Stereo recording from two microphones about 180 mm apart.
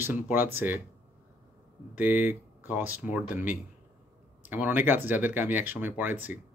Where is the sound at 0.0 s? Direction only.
10° right (ahead or behind).